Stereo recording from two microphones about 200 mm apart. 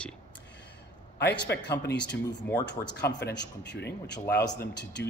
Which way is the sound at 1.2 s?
60° left (ahead or behind).